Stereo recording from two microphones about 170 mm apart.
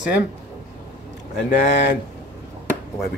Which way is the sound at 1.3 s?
85° left.